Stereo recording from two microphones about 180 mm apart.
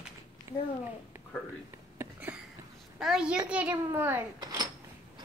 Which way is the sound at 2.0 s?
10° right (ahead or behind).